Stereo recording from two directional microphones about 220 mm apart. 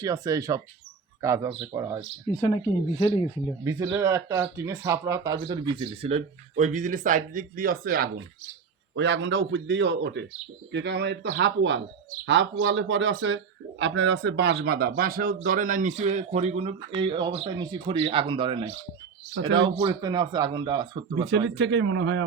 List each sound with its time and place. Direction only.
0.0 s speech: 15° right (ahead or behind)
1.7 s speech: 15° right (ahead or behind)
2.3 s speech: 15° left (ahead or behind)
3.6 s speech: 15° right (ahead or behind); by 8.1 s 40° right (ahead or behind)
9.0 s speech: 55° right (ahead or behind); by 21.2 s 20° right (ahead or behind)
21.2 s speech: 50° right (ahead or behind)